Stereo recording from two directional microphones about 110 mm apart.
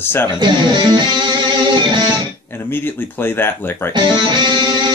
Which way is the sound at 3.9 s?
45° right (ahead or behind).